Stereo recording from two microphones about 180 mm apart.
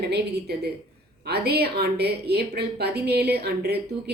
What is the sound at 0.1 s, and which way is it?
A woman's voice, 65° right (ahead or behind).